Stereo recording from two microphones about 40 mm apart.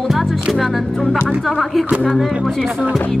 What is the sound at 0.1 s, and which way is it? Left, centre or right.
Speech, centre.